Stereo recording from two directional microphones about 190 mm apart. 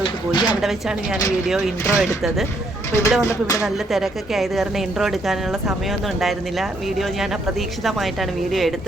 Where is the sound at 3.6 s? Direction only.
Centre (ahead or behind).